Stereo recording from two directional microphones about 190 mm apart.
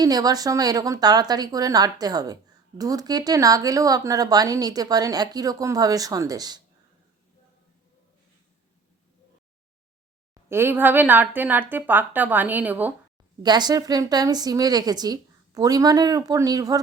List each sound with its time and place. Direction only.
0.0 s a woman's voice: 20° right (ahead or behind)
10.5 s a woman's voice: 10° right (ahead or behind)
13.4 s a woman's voice: 20° right (ahead or behind)